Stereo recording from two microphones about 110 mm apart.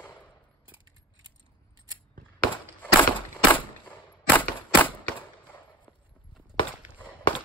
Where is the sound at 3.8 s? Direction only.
15° left (ahead or behind).